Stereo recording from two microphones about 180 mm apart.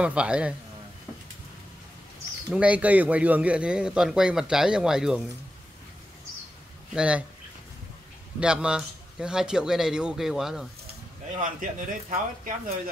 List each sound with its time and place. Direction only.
0.0 s speech: 5° right (ahead or behind)
2.5 s a man's voice: 5° right (ahead or behind)
6.9 s a man's voice: 5° right (ahead or behind)
8.4 s a man's voice: 5° right (ahead or behind)
11.3 s speech: 45° right (ahead or behind)